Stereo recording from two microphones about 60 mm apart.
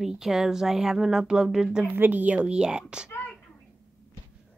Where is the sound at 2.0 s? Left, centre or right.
Right.